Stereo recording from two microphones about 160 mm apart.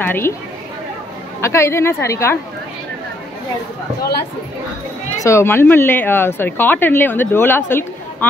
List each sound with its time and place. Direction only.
0.0 s speech: 15° left (ahead or behind)
1.4 s a woman's voice: 15° left (ahead or behind)
5.2 s a woman's voice: 15° left (ahead or behind)